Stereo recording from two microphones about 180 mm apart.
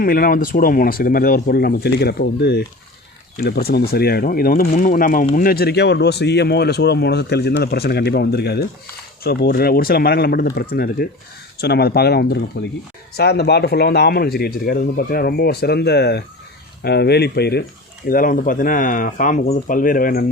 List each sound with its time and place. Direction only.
0.0 s speech: 55° left (ahead or behind)
18.1 s speech: 50° left (ahead or behind)